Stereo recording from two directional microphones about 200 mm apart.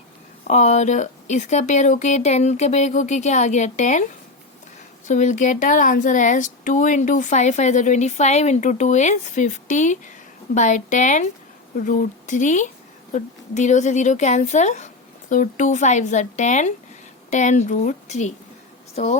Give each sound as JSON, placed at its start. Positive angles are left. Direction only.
{"t": 0.4, "sound": "speech", "side_deg": 35}
{"t": 5.0, "sound": "speech", "side_deg": 35}